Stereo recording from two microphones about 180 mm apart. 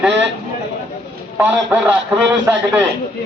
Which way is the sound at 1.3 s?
10° right (ahead or behind).